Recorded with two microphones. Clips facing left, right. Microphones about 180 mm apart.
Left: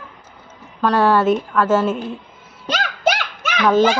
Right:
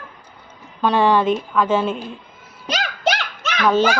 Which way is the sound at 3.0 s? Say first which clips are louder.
Left 3 dB; centre (ahead or behind).